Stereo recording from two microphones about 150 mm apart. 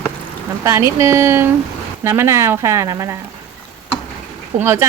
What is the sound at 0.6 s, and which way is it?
Speech, 20° right (ahead or behind).